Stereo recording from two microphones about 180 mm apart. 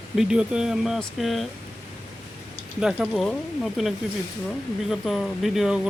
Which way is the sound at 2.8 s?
Centre (ahead or behind).